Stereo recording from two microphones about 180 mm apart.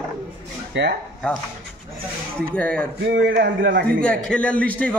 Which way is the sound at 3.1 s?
75° right (ahead or behind).